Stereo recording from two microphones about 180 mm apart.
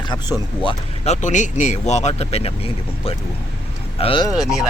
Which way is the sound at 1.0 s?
40° left (ahead or behind).